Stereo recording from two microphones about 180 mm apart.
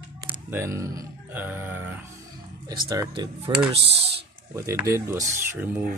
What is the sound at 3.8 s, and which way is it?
Speech, 65° right (ahead or behind).